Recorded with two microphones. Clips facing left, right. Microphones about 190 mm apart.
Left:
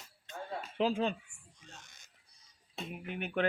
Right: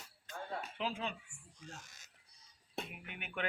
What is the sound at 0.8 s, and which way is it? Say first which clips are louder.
Speech: left 11 dB; 35° left (ahead or behind).